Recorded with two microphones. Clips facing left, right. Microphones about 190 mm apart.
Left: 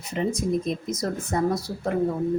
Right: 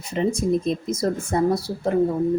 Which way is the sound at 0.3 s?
30° right (ahead or behind).